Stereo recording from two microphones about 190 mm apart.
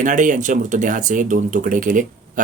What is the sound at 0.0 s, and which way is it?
Speech, 40° right (ahead or behind).